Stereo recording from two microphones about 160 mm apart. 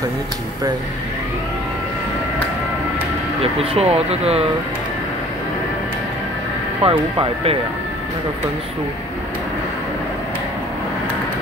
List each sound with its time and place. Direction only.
3.5 s speech: 40° right (ahead or behind)
6.8 s speech: 35° right (ahead or behind)